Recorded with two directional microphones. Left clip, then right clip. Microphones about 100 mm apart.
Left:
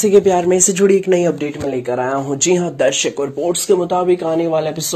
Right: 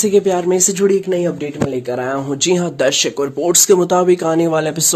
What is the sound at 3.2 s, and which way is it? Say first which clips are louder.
Speech: right 3 dB; 90° right.